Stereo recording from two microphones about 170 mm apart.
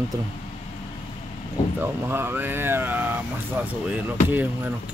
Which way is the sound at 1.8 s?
15° right (ahead or behind).